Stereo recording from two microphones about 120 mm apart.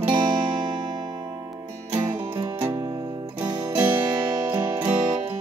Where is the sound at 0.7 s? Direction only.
40° right (ahead or behind).